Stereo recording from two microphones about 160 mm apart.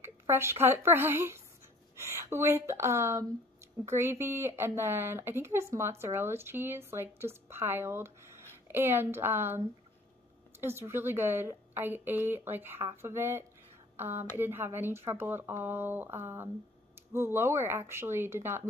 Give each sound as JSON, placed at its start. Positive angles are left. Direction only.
{"t": 0.0, "sound": "speech", "side_deg": -15}
{"t": 10.6, "sound": "speech", "side_deg": -15}